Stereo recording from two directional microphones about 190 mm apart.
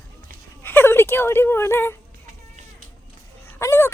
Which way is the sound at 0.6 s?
10° left (ahead or behind).